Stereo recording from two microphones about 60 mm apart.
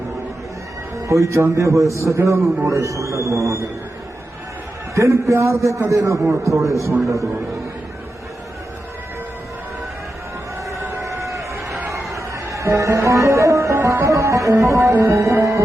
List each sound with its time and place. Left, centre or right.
0.9 s a man's voice: right
4.9 s a man's voice: right
5.3 s a man's voice: right
5.5 s a man's voice: right
11.0 s a sound: right
11.9 s music: right
14.6 s a man's voice: right